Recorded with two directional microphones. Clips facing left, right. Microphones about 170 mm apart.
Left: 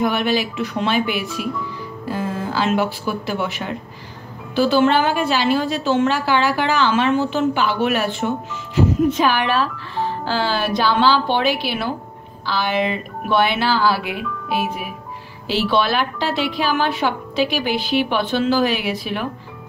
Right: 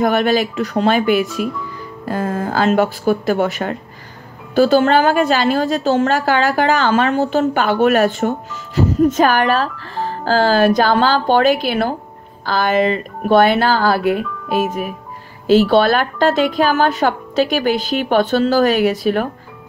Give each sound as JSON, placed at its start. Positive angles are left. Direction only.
{"t": 0.0, "sound": "a woman's voice", "side_deg": -45}